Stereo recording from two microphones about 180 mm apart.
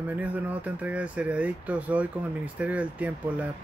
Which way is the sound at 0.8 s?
5° right (ahead or behind).